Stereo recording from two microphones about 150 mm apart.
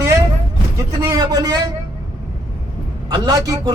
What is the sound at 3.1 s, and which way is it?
Speech, 25° right (ahead or behind).